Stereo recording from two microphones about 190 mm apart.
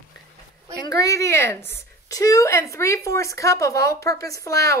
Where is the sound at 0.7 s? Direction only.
20° left (ahead or behind).